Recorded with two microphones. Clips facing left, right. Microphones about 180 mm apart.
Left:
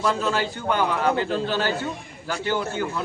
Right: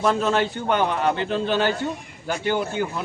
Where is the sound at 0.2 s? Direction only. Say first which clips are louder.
Right 3 dB; 20° right (ahead or behind).